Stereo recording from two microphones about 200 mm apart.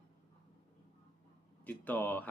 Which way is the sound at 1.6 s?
10° left (ahead or behind).